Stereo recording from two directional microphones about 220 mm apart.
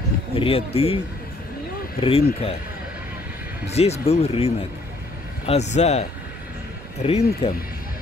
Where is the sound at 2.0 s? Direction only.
25° left (ahead or behind).